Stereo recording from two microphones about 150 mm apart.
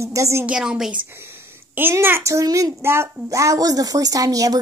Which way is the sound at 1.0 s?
15° right (ahead or behind).